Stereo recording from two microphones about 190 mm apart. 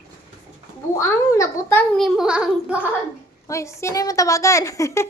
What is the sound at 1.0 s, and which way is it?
Speech, 15° left (ahead or behind).